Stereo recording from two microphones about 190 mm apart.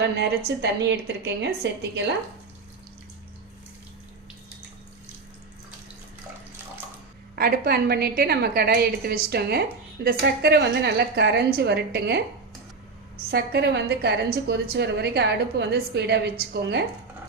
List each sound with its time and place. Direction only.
0.2 s a woman's voice: 60° right (ahead or behind)
7.3 s a woman's voice: 55° right (ahead or behind)
13.3 s a woman's voice: 60° right (ahead or behind)